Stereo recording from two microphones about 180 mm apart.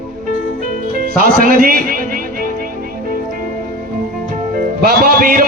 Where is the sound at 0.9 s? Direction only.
50° right (ahead or behind).